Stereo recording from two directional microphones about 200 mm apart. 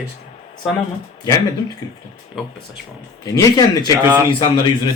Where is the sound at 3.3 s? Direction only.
15° left (ahead or behind).